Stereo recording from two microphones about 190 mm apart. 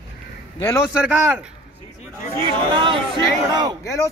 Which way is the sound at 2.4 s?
25° right (ahead or behind).